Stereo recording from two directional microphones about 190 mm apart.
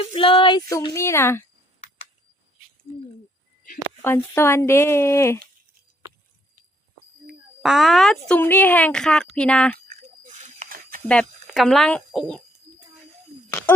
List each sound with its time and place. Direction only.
0.0 s speech: 30° left (ahead or behind)
0.7 s speech: 15° left (ahead or behind)
4.0 s speech: 10° left (ahead or behind)
7.6 s speech: centre (ahead or behind)
10.2 s a sound: 40° right (ahead or behind)
11.1 s speech: 5° left (ahead or behind)